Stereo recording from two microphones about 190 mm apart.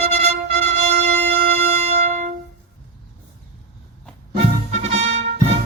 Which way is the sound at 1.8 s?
35° right (ahead or behind).